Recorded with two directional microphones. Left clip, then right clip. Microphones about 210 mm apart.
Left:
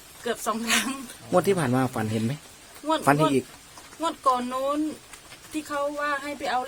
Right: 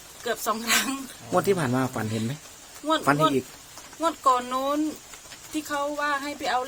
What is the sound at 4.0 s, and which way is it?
Speech, centre (ahead or behind).